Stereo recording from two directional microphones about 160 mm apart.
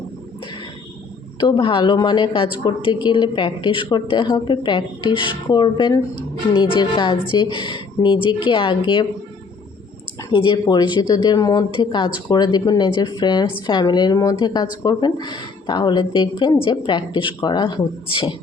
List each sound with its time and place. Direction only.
1.4 s a woman's voice: 30° left (ahead or behind)
10.2 s a woman's voice: 30° left (ahead or behind)